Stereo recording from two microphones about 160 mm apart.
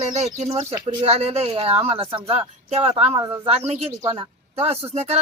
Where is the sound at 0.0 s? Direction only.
45° right (ahead or behind).